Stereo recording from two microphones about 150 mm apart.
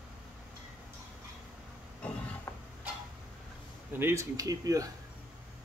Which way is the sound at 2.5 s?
15° left (ahead or behind).